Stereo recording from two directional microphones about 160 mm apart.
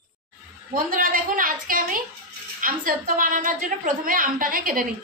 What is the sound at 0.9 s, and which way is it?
A woman's voice, 55° right (ahead or behind).